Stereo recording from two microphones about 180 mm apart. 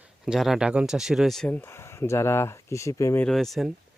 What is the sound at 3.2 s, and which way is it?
Speech, centre (ahead or behind).